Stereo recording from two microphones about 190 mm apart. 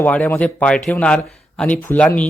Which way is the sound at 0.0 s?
10° left (ahead or behind).